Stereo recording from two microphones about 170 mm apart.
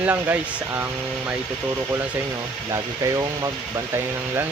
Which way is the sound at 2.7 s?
20° right (ahead or behind).